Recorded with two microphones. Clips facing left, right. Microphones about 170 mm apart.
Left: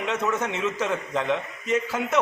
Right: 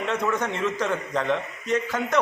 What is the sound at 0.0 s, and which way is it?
A man's voice, 5° left (ahead or behind).